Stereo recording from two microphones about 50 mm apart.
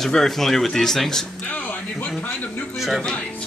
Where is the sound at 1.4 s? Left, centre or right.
Left.